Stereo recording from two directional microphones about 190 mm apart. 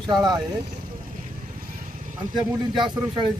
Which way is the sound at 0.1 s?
20° right (ahead or behind).